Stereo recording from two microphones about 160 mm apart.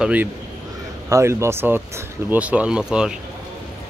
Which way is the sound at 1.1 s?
20° right (ahead or behind).